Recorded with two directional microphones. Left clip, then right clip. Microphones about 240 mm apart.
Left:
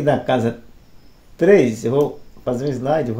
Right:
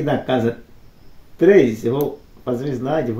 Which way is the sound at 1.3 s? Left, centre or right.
Left.